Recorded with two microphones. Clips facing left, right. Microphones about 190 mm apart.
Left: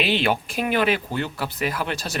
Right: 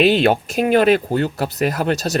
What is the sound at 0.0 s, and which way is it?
Speech, 40° right (ahead or behind).